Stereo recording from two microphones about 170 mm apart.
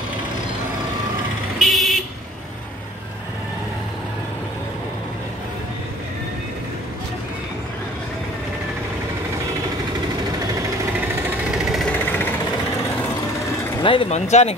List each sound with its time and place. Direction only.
1.6 s vehicle: centre (ahead or behind)
11.2 s a sound: centre (ahead or behind)
12.1 s sewing machine: 10° left (ahead or behind)
13.8 s speech: 35° left (ahead or behind)